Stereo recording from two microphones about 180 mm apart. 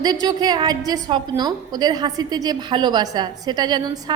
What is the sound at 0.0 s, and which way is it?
A woman's voice, 20° right (ahead or behind).